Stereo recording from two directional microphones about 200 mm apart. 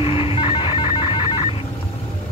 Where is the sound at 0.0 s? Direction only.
30° left (ahead or behind).